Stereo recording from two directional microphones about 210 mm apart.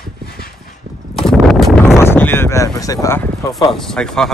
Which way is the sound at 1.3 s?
Centre (ahead or behind).